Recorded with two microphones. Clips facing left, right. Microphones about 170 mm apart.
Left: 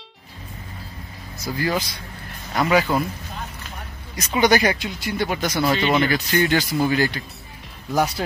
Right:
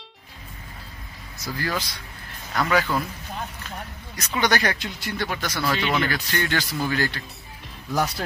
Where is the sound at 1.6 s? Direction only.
15° left (ahead or behind).